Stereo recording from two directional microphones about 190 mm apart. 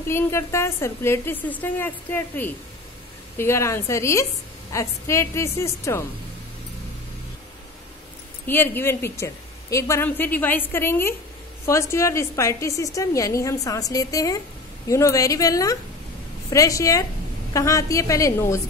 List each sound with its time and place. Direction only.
0.0 s a woman's voice: 15° left (ahead or behind)
8.5 s a woman's voice: 10° left (ahead or behind)